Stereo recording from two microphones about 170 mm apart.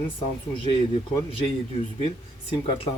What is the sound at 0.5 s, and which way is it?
Speech, 30° left (ahead or behind).